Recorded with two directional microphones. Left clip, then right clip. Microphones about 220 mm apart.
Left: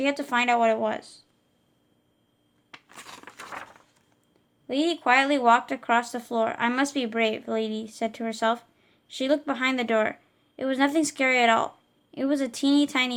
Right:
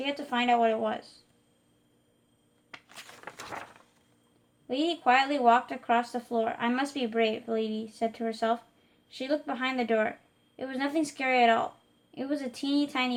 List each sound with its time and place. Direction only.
0.0 s speech: 40° left (ahead or behind)
4.7 s speech: 35° left (ahead or behind)